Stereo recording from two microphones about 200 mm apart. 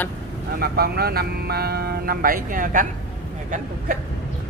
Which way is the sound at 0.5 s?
50° right (ahead or behind).